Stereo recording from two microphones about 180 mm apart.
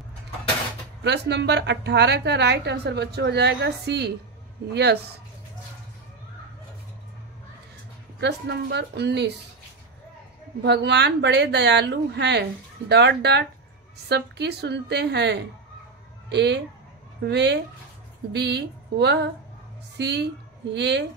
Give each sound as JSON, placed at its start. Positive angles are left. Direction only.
{"t": 1.0, "sound": "a woman's voice", "side_deg": -70}
{"t": 8.2, "sound": "a woman's voice", "side_deg": -75}
{"t": 10.6, "sound": "a woman's voice", "side_deg": -70}